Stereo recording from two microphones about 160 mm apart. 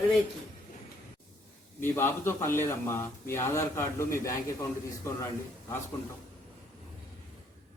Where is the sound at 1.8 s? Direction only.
15° left (ahead or behind).